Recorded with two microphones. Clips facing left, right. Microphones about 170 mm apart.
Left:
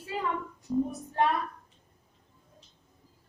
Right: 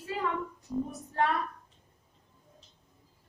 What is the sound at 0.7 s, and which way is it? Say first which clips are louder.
Speech: left 5 dB; 5° left (ahead or behind).